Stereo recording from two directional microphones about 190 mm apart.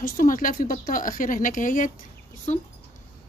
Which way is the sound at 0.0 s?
45° left (ahead or behind).